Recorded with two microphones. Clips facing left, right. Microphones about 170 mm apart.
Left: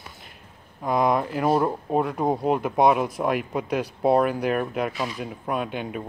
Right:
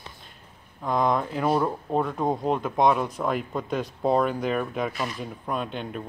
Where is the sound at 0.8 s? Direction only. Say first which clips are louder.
Left 2 dB; 10° left (ahead or behind).